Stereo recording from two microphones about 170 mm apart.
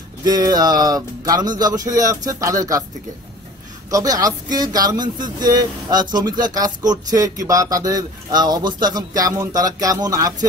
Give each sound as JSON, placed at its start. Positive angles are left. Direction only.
{"t": 0.2, "sound": "speech", "side_deg": -25}
{"t": 3.9, "sound": "speech", "side_deg": -20}